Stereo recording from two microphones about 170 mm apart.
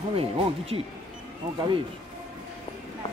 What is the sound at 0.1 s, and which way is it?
Speech, 35° right (ahead or behind).